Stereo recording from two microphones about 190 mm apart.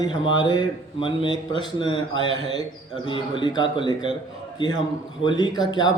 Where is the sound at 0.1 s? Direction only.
25° left (ahead or behind).